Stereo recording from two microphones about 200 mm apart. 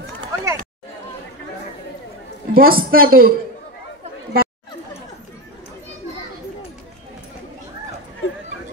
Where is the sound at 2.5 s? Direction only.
45° right (ahead or behind).